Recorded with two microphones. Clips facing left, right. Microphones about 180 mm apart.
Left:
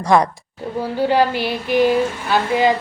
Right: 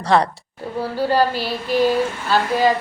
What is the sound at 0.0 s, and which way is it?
Speech, 15° left (ahead or behind).